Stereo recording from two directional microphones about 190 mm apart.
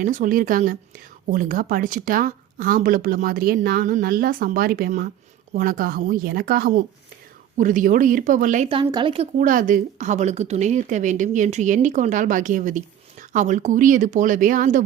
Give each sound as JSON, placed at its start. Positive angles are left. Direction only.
{"t": 0.0, "sound": "a woman's voice", "side_deg": -45}
{"t": 8.7, "sound": "speech", "side_deg": -25}
{"t": 9.4, "sound": "a woman's voice", "side_deg": -45}